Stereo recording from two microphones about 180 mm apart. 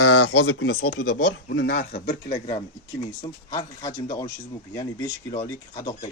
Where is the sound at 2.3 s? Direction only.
30° left (ahead or behind).